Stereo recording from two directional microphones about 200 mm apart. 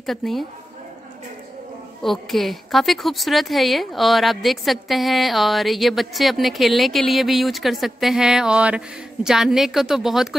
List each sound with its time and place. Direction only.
0.0 s a woman's voice: centre (ahead or behind)
2.0 s a woman's voice: centre (ahead or behind)